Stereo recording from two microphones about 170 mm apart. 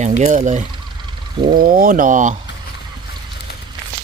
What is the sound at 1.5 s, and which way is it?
Speech, 55° right (ahead or behind).